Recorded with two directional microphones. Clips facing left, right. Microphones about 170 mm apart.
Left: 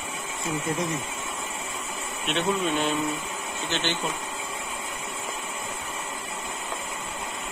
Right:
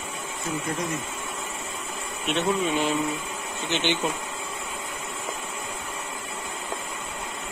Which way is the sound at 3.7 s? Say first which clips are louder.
Right 4 dB; 15° right (ahead or behind).